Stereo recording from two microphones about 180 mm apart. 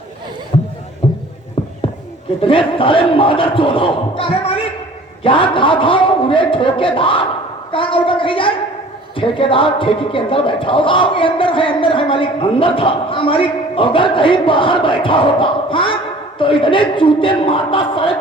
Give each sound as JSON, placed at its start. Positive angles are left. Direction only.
{"t": 0.5, "sound": "beatboxing", "side_deg": 30}
{"t": 1.0, "sound": "music", "side_deg": 30}
{"t": 1.6, "sound": "a sound", "side_deg": 30}
{"t": 2.4, "sound": "speech", "side_deg": 30}